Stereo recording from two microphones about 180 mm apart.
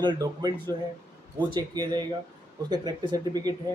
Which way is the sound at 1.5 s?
25° right (ahead or behind).